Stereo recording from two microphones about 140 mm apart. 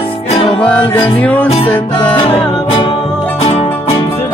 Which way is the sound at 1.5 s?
45° left (ahead or behind).